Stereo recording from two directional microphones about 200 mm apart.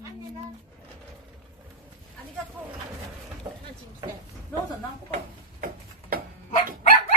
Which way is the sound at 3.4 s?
25° right (ahead or behind).